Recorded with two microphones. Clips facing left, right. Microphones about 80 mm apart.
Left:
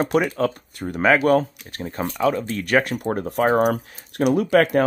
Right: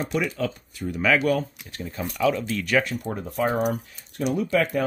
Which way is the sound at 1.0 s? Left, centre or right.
Left.